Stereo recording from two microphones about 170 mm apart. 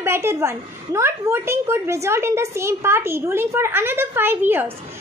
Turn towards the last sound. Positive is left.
turn(degrees=-10)  # may be behind; listen again after turning